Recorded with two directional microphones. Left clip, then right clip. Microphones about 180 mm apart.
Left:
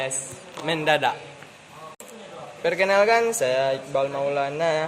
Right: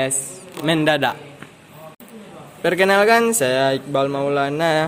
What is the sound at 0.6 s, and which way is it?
Speech, 50° right (ahead or behind).